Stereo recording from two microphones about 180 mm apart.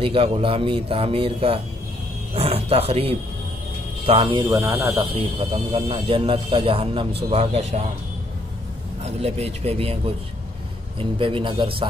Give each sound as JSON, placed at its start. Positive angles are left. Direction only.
{"t": 0.0, "sound": "a man's voice", "side_deg": -30}
{"t": 5.7, "sound": "speech", "side_deg": -30}
{"t": 9.0, "sound": "a man's voice", "side_deg": -35}